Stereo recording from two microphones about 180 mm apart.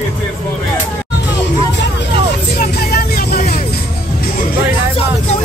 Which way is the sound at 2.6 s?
55° left (ahead or behind).